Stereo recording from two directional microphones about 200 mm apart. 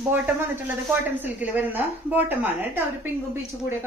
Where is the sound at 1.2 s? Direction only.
10° right (ahead or behind).